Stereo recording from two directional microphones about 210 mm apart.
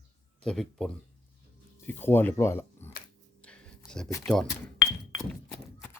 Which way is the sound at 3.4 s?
5° left (ahead or behind).